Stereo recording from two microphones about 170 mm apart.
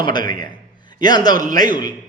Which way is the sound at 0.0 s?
25° left (ahead or behind).